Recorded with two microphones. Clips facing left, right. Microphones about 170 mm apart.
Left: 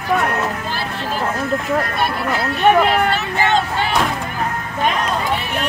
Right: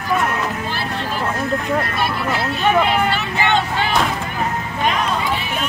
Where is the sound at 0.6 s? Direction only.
35° left (ahead or behind).